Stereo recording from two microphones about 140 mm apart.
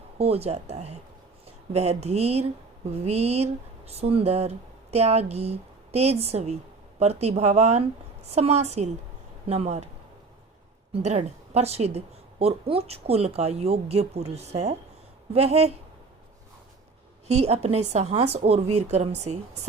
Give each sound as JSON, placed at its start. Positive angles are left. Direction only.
{"t": 0.2, "sound": "speech", "side_deg": -45}
{"t": 10.9, "sound": "speech", "side_deg": -50}
{"t": 17.2, "sound": "speech", "side_deg": -50}